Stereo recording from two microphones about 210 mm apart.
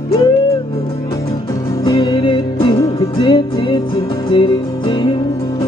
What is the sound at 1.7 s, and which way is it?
Music, 25° left (ahead or behind).